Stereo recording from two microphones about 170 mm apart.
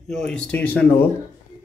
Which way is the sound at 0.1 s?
5° left (ahead or behind).